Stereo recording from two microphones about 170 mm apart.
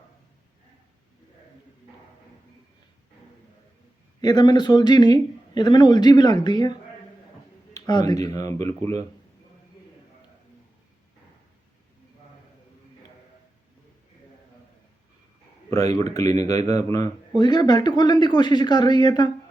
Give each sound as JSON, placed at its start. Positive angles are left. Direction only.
{"t": 4.2, "sound": "speech", "side_deg": 25}
{"t": 7.9, "sound": "speech", "side_deg": 25}
{"t": 15.9, "sound": "speech", "side_deg": 20}